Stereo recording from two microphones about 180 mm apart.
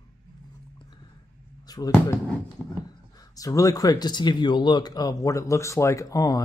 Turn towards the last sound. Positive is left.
turn(degrees=20)  # may be behind; listen again after turning